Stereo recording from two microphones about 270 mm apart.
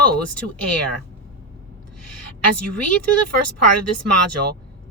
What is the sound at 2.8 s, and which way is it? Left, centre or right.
Speech, right.